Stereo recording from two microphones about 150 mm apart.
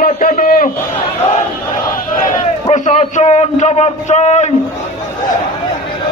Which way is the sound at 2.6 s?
50° left (ahead or behind).